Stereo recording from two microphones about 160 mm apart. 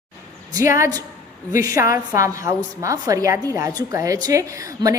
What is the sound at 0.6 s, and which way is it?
A woman's voice, 20° right (ahead or behind).